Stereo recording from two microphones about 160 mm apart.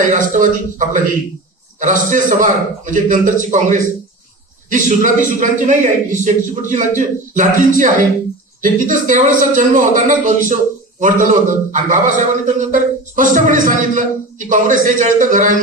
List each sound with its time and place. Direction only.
0.0 s a man's voice: 50° right (ahead or behind)
4.7 s a man's voice: 55° right (ahead or behind)